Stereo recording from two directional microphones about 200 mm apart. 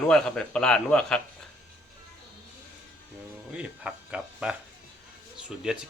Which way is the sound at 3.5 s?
5° right (ahead or behind).